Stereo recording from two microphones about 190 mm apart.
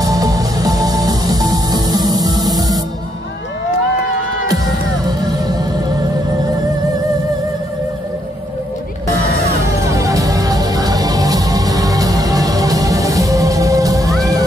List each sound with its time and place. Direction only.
0.0 s music: 20° right (ahead or behind)
5.0 s music: 20° right (ahead or behind)
9.6 s music: 15° right (ahead or behind)